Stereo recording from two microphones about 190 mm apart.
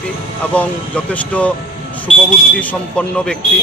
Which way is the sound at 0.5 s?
5° left (ahead or behind).